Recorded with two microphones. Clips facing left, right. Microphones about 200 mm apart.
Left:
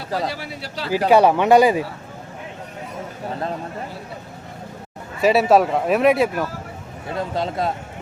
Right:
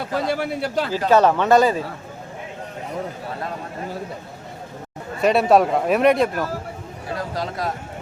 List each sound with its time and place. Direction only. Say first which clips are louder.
0.3 s speech: right 8 dB; 50° right (ahead or behind)
0.9 s speech: left 3 dB; 10° left (ahead or behind)
5.2 s speech: left 1 dB; 5° left (ahead or behind)
7.2 s a man's voice: left 4 dB; 25° left (ahead or behind)